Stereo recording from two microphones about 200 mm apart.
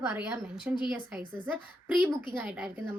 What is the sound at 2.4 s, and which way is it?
Speech, 5° right (ahead or behind).